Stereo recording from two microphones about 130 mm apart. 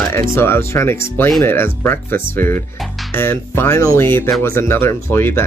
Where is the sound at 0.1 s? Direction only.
20° left (ahead or behind).